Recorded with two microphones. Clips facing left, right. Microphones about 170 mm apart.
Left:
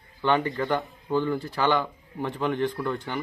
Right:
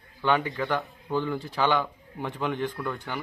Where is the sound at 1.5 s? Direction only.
10° right (ahead or behind).